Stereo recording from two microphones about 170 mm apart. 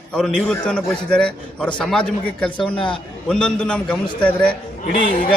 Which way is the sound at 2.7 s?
30° left (ahead or behind).